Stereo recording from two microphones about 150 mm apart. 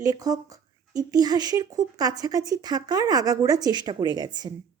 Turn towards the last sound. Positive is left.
turn(degrees=-30)  # may be behind; listen again after turning